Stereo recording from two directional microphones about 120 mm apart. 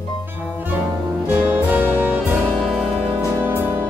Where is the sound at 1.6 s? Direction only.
10° right (ahead or behind).